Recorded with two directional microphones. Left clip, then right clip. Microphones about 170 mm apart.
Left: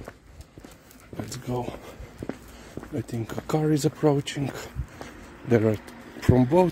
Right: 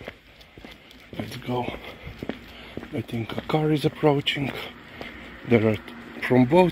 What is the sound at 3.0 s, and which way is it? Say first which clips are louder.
Speech: right 2 dB; 30° left (ahead or behind).